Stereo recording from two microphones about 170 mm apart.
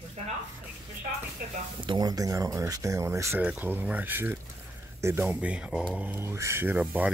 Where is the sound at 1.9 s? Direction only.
20° right (ahead or behind).